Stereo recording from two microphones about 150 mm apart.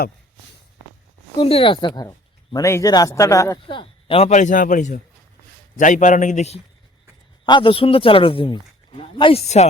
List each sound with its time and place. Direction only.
1.4 s speech: 40° left (ahead or behind); by 3.6 s 20° left (ahead or behind)
3.7 s a man's voice: 35° left (ahead or behind)
7.4 s a man's voice: 35° left (ahead or behind)